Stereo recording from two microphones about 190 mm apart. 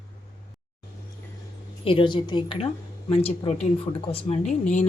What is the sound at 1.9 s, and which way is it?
Speech, 25° left (ahead or behind).